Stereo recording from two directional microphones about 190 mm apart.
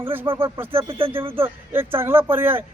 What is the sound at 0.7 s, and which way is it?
Speech, 30° right (ahead or behind).